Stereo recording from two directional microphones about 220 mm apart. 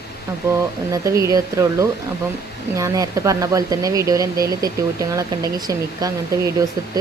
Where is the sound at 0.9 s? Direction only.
15° right (ahead or behind).